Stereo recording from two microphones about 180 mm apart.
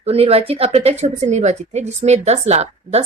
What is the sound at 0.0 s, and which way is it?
A woman's voice, 35° right (ahead or behind).